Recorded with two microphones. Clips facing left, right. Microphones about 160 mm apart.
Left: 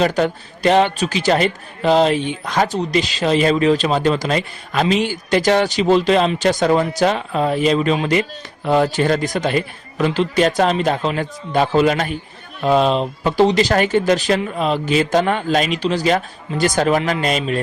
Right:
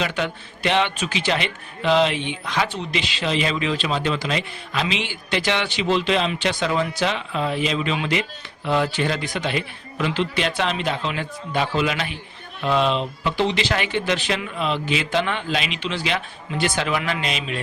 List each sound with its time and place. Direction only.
0.0 s a man's voice: 40° left (ahead or behind)